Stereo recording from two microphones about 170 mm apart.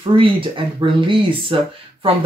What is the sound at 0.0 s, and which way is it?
Speech, 30° right (ahead or behind).